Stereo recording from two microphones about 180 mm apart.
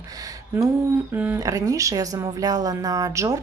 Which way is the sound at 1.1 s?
10° right (ahead or behind).